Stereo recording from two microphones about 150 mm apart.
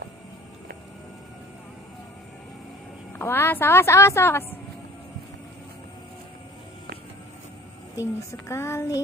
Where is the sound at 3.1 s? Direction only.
15° left (ahead or behind).